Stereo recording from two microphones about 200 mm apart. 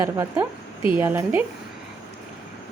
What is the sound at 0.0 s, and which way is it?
Speech, 15° right (ahead or behind).